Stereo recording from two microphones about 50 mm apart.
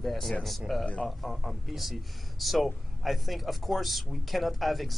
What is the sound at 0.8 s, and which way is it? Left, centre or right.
Speech, left.